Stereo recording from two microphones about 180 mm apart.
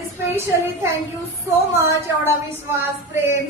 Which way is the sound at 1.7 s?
15° right (ahead or behind).